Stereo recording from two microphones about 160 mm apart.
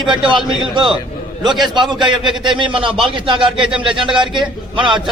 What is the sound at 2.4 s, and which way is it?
Speech, 30° right (ahead or behind).